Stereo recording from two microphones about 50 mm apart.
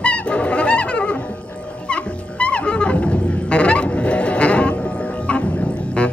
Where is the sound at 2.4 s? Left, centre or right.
Left.